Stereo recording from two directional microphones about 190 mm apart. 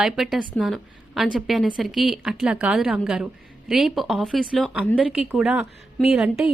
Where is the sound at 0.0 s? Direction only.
Centre (ahead or behind).